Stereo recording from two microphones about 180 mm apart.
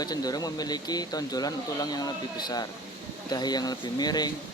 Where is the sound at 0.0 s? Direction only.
20° left (ahead or behind).